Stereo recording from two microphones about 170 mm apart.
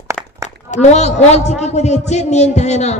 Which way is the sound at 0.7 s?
40° left (ahead or behind).